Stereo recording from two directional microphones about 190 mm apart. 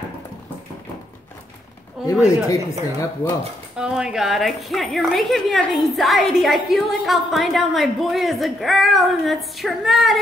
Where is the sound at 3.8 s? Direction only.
5° right (ahead or behind).